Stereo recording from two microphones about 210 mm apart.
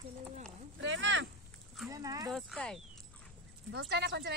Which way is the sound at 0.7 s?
60° right (ahead or behind).